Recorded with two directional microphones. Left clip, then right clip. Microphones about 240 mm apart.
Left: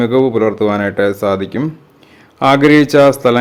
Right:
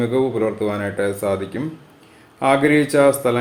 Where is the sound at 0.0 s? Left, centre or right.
Left.